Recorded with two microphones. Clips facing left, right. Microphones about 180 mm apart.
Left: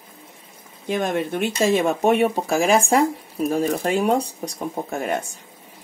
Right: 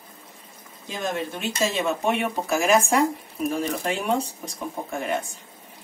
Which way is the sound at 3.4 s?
45° left (ahead or behind).